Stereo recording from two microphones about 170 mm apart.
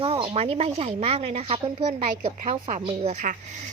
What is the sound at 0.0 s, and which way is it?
Speech, 35° right (ahead or behind).